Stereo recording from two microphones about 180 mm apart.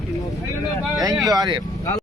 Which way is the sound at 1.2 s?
20° right (ahead or behind).